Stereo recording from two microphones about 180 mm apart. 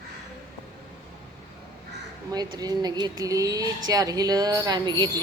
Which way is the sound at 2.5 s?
20° right (ahead or behind).